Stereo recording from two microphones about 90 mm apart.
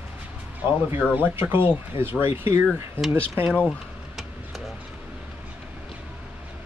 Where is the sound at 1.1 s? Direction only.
25° right (ahead or behind).